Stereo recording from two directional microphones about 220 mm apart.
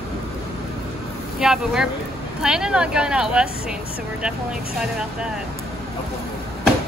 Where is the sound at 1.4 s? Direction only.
5° right (ahead or behind).